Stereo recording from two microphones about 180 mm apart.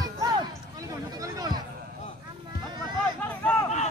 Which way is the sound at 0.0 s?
20° right (ahead or behind).